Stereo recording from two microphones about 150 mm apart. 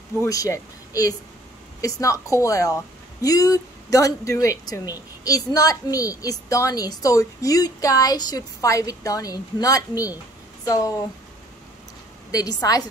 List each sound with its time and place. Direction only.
0.2 s a woman's voice: 20° left (ahead or behind)
12.3 s a woman's voice: 25° left (ahead or behind)